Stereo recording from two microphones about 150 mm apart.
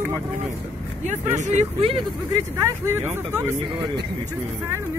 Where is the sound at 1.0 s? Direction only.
50° right (ahead or behind).